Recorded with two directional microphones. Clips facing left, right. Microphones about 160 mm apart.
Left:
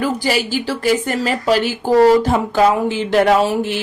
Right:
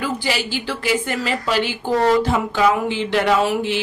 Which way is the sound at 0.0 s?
45° left (ahead or behind).